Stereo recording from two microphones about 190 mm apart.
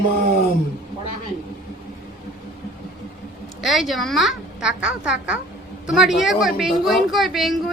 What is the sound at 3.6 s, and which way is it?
A woman's voice, centre (ahead or behind).